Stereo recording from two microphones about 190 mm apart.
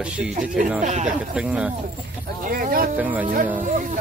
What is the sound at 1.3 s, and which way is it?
Speech, 5° right (ahead or behind).